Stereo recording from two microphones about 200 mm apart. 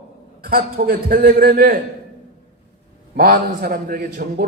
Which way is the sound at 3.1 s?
50° right (ahead or behind).